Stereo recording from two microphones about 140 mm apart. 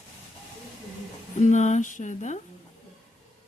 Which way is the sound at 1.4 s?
60° left (ahead or behind).